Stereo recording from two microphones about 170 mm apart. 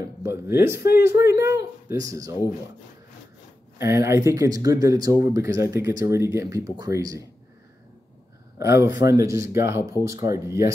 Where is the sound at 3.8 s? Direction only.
15° right (ahead or behind).